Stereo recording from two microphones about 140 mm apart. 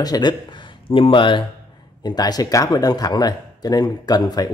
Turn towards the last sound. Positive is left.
turn(degrees=30)  # may be behind; listen again after turning